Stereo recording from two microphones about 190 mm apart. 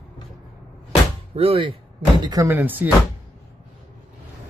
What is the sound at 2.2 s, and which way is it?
Speech, 20° right (ahead or behind).